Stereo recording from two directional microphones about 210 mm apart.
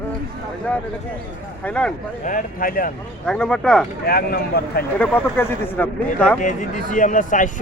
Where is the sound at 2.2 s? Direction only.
40° left (ahead or behind).